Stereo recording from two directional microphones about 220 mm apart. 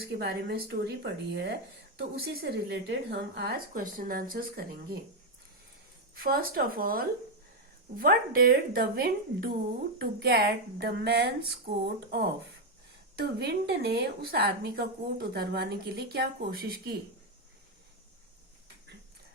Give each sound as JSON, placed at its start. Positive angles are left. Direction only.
{"t": 0.1, "sound": "a woman's voice", "side_deg": -50}
{"t": 6.1, "sound": "a woman's voice", "side_deg": -40}